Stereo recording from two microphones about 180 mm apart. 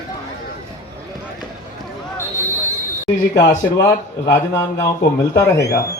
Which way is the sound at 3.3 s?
20° left (ahead or behind).